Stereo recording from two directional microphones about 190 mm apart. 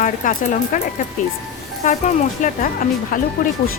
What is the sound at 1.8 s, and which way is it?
A woman's voice, 40° left (ahead or behind).